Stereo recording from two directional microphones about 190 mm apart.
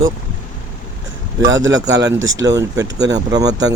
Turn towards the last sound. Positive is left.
turn(degrees=-20)  # may be behind; listen again after turning